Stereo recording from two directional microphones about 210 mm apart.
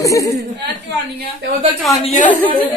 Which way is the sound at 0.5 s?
55° right (ahead or behind).